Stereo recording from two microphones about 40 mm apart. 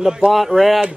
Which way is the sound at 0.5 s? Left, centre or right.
Centre.